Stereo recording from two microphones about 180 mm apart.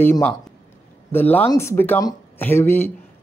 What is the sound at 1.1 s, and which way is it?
Speech, 10° left (ahead or behind).